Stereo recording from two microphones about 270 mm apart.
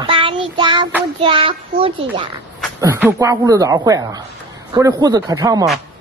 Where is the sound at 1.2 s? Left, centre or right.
Centre.